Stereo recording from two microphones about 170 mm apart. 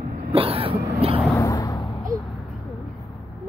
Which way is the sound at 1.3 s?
20° left (ahead or behind).